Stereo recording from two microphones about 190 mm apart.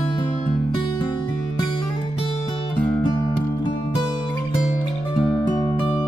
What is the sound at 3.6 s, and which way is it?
Music, 25° left (ahead or behind).